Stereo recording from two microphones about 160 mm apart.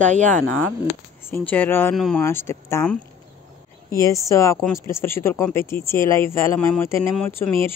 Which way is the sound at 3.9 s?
20° left (ahead or behind).